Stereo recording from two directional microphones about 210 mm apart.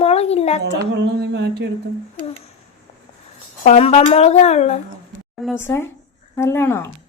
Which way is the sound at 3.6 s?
30° left (ahead or behind).